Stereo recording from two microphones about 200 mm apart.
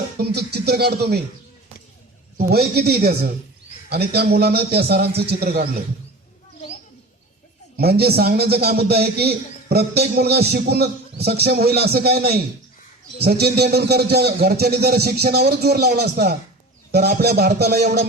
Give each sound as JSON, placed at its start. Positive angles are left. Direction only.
{"t": 0.2, "sound": "a man's voice", "side_deg": -55}
{"t": 2.4, "sound": "a man's voice", "side_deg": -50}
{"t": 7.8, "sound": "a man's voice", "side_deg": -50}